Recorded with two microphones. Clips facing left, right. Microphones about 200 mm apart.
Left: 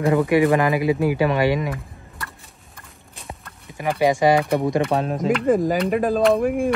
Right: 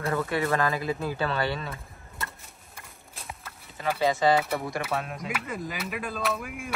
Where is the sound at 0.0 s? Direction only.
15° left (ahead or behind).